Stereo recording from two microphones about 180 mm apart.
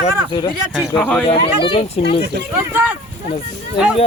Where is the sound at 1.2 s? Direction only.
30° left (ahead or behind).